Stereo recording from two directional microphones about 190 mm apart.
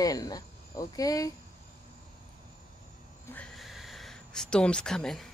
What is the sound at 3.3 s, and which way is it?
Speech, 5° left (ahead or behind).